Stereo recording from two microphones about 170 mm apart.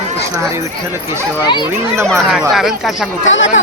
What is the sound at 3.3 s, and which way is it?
Speech, 90° left.